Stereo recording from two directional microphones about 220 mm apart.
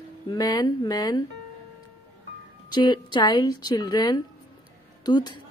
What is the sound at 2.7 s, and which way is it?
Speech, 20° left (ahead or behind).